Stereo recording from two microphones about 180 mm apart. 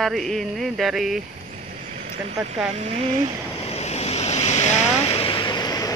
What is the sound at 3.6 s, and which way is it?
Waves, 35° left (ahead or behind).